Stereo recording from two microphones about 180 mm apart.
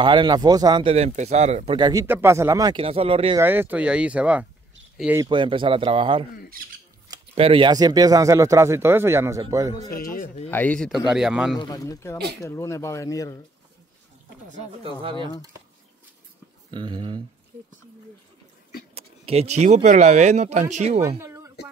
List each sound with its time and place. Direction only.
0.0 s a man's voice: 25° right (ahead or behind)
0.9 s speech: 40° right (ahead or behind)
1.8 s a man's voice: 20° right (ahead or behind)
2.8 s speech: 30° right (ahead or behind)
3.3 s speech: 10° right (ahead or behind)
5.2 s a man's voice: 25° right (ahead or behind)
7.3 s a man's voice: 30° right (ahead or behind)
9.8 s a man's voice: 55° left (ahead or behind)
10.5 s speech: 10° left (ahead or behind)
11.5 s speech: 25° left (ahead or behind)
14.8 s a man's voice: 30° right (ahead or behind)
16.7 s a man's voice: 25° right (ahead or behind)
18.9 s speech: 35° right (ahead or behind)
21.2 s a sound: 15° right (ahead or behind)